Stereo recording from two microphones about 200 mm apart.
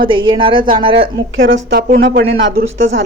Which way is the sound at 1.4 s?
60° right (ahead or behind).